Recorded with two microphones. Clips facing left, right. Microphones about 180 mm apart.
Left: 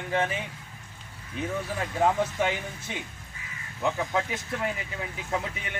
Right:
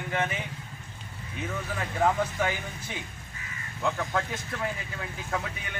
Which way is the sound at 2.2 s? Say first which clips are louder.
Left 2 dB; 25° left (ahead or behind).